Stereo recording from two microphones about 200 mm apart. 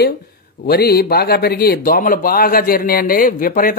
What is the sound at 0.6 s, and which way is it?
Speech, 50° left (ahead or behind).